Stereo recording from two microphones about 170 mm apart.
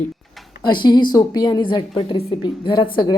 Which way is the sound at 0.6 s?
25° left (ahead or behind).